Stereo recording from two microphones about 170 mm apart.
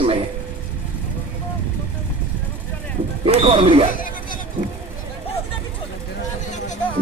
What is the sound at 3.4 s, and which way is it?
Speech, 35° right (ahead or behind).